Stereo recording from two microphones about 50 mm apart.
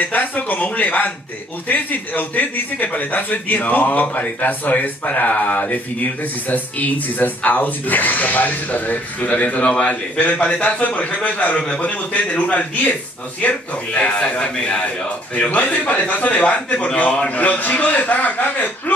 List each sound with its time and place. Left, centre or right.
0.0 s a man's voice: left